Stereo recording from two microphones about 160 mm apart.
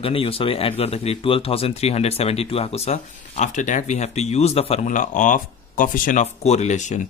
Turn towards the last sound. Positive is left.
turn(degrees=50)  # may be behind; listen again after turning